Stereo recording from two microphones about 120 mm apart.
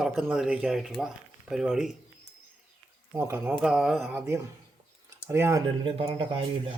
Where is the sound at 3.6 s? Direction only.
5° right (ahead or behind).